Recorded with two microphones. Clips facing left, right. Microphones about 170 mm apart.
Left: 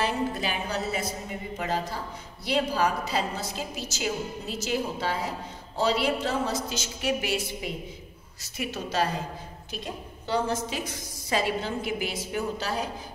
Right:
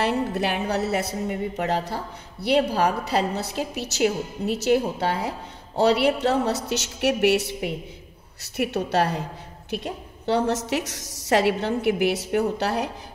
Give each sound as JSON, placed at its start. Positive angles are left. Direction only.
{"t": 0.0, "sound": "a woman's voice", "side_deg": -65}